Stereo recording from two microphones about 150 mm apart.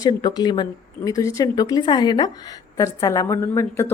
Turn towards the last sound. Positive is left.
turn(degrees=20)  # may be behind; listen again after turning